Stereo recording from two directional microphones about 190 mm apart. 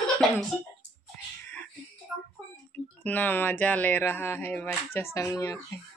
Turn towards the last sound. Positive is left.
turn(degrees=15)  # may be behind; listen again after turning